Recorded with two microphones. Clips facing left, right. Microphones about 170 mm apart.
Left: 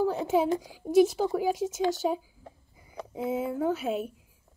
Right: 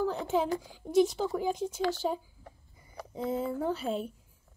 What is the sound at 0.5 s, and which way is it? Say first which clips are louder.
A woman's voice: left 5 dB; 15° left (ahead or behind).